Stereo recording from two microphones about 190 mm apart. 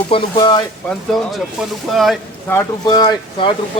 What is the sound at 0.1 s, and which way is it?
Speech, 25° left (ahead or behind).